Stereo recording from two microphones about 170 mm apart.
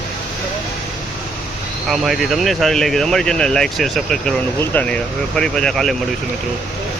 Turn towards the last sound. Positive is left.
turn(degrees=0)  # may be behind; listen again after turning